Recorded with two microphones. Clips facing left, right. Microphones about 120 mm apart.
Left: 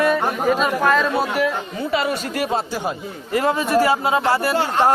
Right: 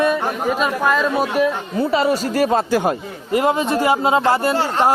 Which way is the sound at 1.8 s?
35° right (ahead or behind).